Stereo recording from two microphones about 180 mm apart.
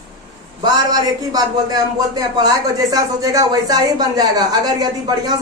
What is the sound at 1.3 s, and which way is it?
Speech, 20° right (ahead or behind).